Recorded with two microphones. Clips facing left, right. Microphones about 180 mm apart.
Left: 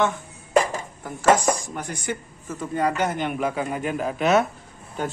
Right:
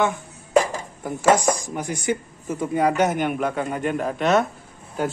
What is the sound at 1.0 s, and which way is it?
A man's voice, 10° right (ahead or behind).